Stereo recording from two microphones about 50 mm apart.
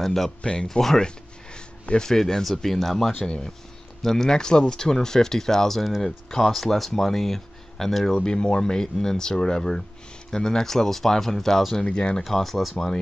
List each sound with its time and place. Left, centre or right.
0.0 s speech: centre
0.4 s speech: centre
3.2 s speech: centre
8.2 s speech: centre
11.8 s speech: centre
12.2 s speech: centre